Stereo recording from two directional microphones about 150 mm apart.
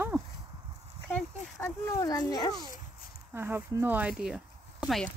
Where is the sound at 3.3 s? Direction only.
15° right (ahead or behind).